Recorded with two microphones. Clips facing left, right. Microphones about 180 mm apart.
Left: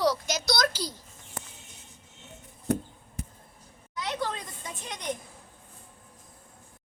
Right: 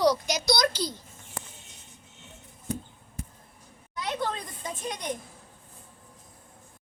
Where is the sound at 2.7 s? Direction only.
65° left (ahead or behind).